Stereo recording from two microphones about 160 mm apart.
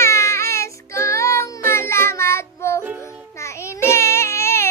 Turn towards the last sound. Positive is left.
turn(degrees=15)  # may be behind; listen again after turning